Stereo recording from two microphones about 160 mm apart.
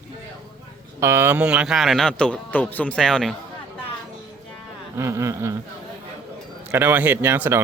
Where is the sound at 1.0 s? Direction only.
15° right (ahead or behind); by 3.3 s 5° left (ahead or behind).